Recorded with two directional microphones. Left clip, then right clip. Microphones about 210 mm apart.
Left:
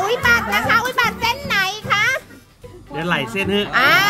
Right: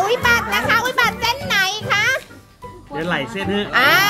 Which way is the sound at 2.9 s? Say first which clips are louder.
Left 2 dB; 55° left (ahead or behind).